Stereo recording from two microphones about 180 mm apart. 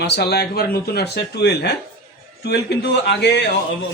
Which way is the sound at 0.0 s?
65° left (ahead or behind).